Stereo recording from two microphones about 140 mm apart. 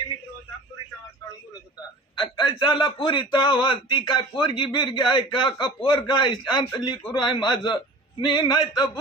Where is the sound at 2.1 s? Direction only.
30° left (ahead or behind).